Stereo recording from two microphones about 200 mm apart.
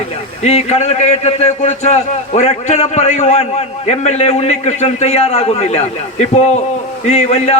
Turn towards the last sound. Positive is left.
turn(degrees=35)  # may be behind; listen again after turning